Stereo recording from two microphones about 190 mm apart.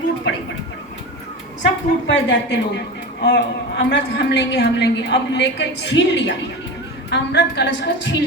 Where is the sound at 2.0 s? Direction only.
65° left (ahead or behind).